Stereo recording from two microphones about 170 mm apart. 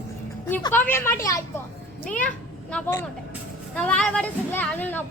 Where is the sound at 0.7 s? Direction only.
10° left (ahead or behind).